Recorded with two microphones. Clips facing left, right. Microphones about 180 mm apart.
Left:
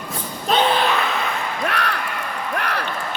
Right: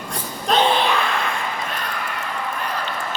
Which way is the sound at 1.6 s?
75° left (ahead or behind).